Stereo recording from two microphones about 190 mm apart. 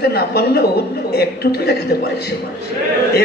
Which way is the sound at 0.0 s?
60° left (ahead or behind).